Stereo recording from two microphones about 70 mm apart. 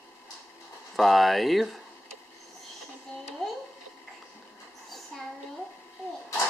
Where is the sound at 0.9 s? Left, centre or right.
Centre.